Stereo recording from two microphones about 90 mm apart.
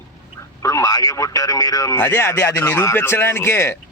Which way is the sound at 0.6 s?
40° left (ahead or behind).